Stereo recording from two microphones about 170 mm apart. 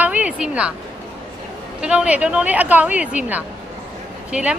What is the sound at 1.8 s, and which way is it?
Speech, 5° right (ahead or behind).